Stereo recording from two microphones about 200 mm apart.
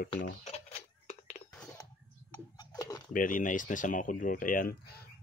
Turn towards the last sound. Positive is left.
turn(degrees=50)  # may be behind; listen again after turning